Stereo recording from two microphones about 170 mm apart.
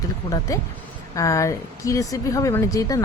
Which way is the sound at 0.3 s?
20° left (ahead or behind).